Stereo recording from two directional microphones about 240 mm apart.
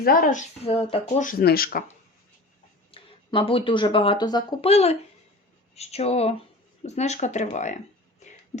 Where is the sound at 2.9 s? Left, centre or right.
Left.